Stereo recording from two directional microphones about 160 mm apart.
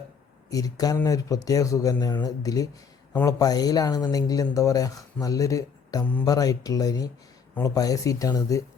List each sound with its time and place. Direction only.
0.5 s speech: 25° left (ahead or behind)
3.1 s speech: 10° left (ahead or behind)
3.3 s speech: 25° left (ahead or behind)